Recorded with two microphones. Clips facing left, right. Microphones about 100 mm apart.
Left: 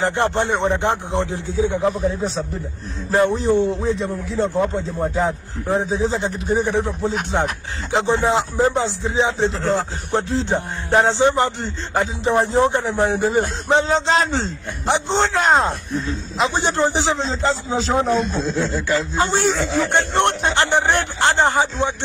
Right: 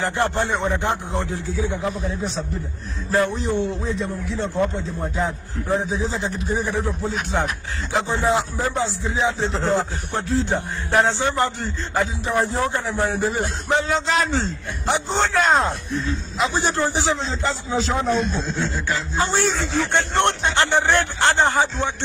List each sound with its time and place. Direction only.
0.0 s a man's voice: 25° left (ahead or behind)
1.9 s a man's voice: 35° left (ahead or behind)
6.9 s a man's voice: 20° left (ahead or behind)
9.5 s speech: 20° right (ahead or behind)
10.1 s a man's voice: 20° left (ahead or behind)
19.3 s speech: 15° left (ahead or behind)